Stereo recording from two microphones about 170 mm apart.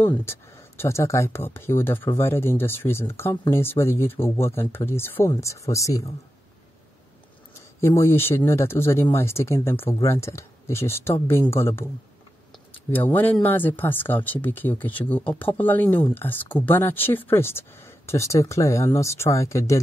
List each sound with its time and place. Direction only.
0.0 s speech: 15° left (ahead or behind)
7.5 s speech: 15° left (ahead or behind)